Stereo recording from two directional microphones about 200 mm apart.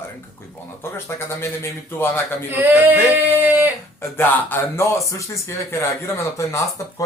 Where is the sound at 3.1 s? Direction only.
10° right (ahead or behind).